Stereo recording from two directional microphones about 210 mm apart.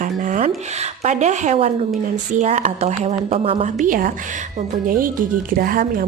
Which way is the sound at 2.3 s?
35° right (ahead or behind).